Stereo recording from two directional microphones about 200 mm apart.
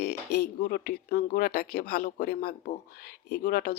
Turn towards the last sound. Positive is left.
turn(degrees=45)  # may be behind; listen again after turning